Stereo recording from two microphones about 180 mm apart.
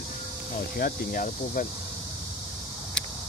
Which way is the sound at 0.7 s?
50° left (ahead or behind).